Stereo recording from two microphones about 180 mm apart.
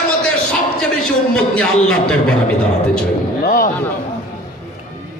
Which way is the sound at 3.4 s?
50° left (ahead or behind).